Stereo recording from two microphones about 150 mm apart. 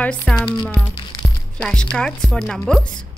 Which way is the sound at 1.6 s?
5° left (ahead or behind).